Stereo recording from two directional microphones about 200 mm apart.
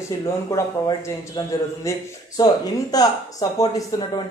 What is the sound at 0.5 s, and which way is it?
A man's voice, 20° left (ahead or behind).